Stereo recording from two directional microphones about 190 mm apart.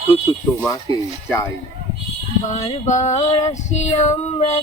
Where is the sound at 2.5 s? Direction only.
35° left (ahead or behind).